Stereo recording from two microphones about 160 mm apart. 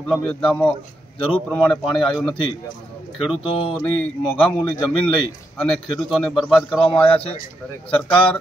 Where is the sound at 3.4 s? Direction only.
35° left (ahead or behind).